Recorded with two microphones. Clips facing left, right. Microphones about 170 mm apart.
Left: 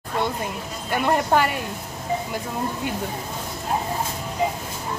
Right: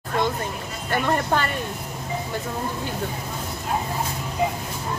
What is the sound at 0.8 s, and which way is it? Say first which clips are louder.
Speech: left 1 dB; 10° left (ahead or behind).